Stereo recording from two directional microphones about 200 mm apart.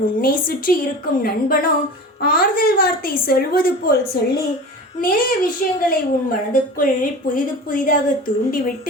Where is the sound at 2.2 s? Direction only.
45° left (ahead or behind).